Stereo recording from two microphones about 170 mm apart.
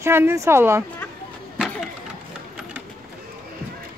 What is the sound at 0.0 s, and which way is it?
Speech, 15° right (ahead or behind).